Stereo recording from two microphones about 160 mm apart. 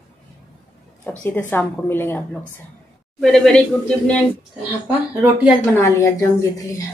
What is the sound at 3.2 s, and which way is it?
Speech, 5° left (ahead or behind).